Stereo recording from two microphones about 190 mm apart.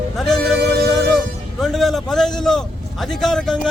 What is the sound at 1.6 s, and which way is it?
Speech, centre (ahead or behind).